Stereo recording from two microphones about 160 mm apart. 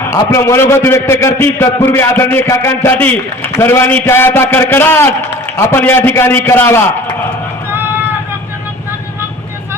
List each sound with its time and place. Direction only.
0.0 s a man's voice: 15° left (ahead or behind)